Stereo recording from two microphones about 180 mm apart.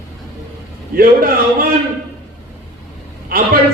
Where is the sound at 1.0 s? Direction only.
55° right (ahead or behind).